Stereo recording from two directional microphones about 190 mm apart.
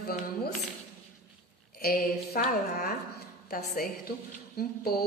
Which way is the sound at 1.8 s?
55° left (ahead or behind).